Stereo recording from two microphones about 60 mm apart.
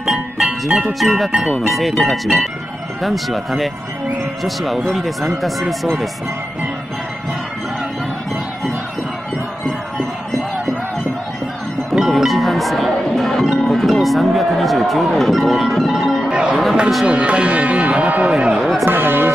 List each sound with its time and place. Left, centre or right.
0.0 s music: centre
0.5 s speech: centre
0.9 s speech: centre
4.8 s speech: centre
9.7 s a sound: centre
11.9 s music: centre
13.6 s speech: centre
16.3 s chatter: centre
17.0 s speech: centre
18.9 s speech: right